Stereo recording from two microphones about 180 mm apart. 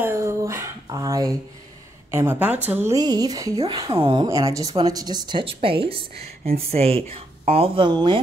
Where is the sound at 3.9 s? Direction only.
30° right (ahead or behind).